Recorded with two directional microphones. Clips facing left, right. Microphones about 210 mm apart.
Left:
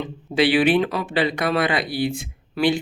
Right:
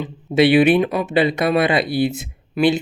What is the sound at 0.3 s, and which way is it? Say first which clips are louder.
Speech: right 4 dB; 25° right (ahead or behind).